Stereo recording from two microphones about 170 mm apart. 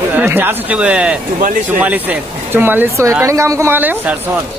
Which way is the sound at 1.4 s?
50° right (ahead or behind).